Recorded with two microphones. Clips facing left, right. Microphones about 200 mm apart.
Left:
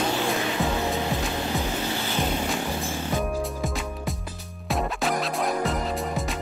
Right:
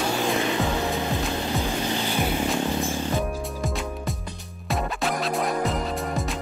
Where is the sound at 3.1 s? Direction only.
Centre (ahead or behind).